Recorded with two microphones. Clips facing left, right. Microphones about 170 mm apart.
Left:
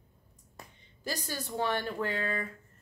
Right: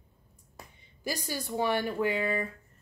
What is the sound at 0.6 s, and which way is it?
Speech, 10° right (ahead or behind).